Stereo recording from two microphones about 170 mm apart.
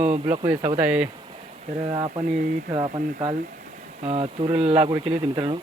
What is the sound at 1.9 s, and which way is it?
Speech, 30° right (ahead or behind).